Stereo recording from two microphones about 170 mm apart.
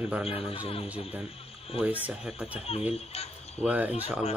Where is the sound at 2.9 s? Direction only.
35° left (ahead or behind).